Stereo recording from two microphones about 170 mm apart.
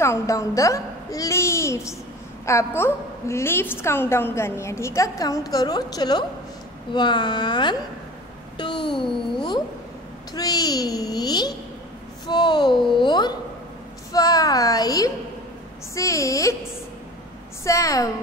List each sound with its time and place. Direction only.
0.0 s a woman's voice: 15° left (ahead or behind)
17.6 s a child's voice: 20° left (ahead or behind)